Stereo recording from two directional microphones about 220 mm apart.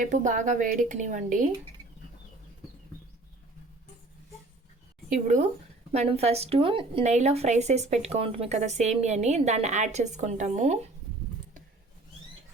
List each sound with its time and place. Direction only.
0.0 s speech: 35° right (ahead or behind)
5.0 s speech: 35° right (ahead or behind)